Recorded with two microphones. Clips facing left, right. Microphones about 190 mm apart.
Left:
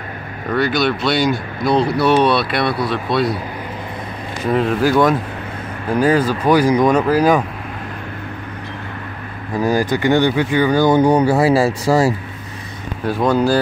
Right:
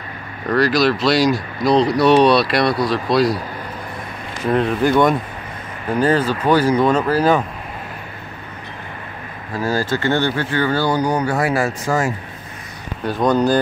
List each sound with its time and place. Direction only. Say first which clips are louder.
0.5 s speech: right 2 dB; centre (ahead or behind)
4.5 s speech: left 1 dB; centre (ahead or behind)
9.6 s speech: left 3 dB; 15° left (ahead or behind); by 12.1 s 35° left (ahead or behind)
13.0 s speech: left 1 dB; 5° left (ahead or behind)